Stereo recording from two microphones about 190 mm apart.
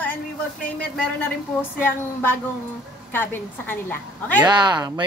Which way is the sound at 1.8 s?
10° left (ahead or behind).